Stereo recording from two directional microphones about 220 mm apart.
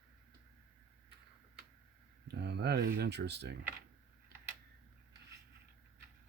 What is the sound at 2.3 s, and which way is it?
Speech, 50° right (ahead or behind).